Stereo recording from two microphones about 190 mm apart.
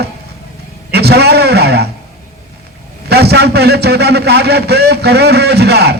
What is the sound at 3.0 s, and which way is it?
A man's voice, 60° right (ahead or behind).